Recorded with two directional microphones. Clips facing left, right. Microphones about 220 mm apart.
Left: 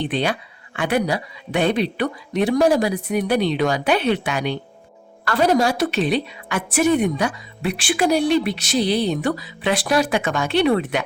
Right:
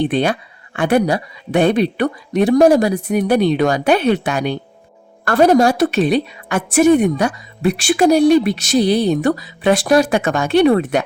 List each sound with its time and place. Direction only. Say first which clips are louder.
0.0 s a woman's voice: right 6 dB; 50° right (ahead or behind)